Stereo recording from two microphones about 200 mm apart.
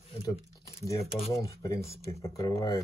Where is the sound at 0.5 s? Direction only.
15° left (ahead or behind).